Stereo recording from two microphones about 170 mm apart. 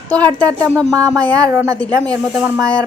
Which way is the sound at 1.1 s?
20° right (ahead or behind).